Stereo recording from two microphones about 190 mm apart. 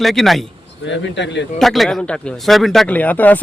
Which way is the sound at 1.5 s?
Centre (ahead or behind).